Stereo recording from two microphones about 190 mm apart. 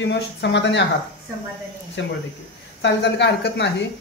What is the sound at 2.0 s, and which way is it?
Speech, 70° left (ahead or behind).